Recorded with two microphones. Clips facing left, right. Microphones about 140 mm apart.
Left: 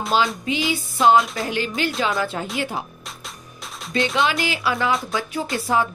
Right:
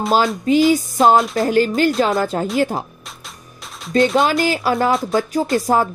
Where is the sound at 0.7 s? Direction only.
45° right (ahead or behind).